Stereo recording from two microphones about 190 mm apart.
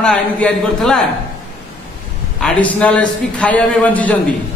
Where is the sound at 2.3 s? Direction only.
5° left (ahead or behind).